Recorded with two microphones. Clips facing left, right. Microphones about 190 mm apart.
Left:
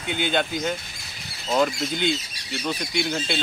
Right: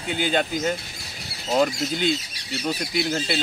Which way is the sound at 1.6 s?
5° right (ahead or behind).